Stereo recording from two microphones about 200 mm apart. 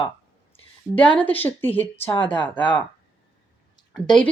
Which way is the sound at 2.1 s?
25° left (ahead or behind).